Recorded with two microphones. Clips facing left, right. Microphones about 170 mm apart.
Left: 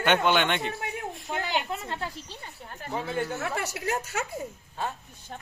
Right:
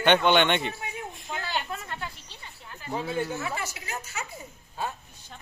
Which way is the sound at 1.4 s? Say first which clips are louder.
Left 2 dB; 20° left (ahead or behind).